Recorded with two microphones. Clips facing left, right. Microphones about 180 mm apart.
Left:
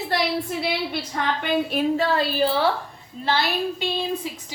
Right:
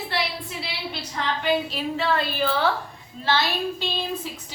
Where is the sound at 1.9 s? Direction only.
40° left (ahead or behind).